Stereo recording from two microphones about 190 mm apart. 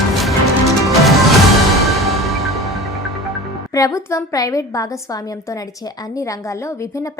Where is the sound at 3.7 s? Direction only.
15° left (ahead or behind).